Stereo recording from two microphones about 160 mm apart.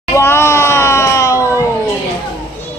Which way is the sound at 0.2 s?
15° left (ahead or behind).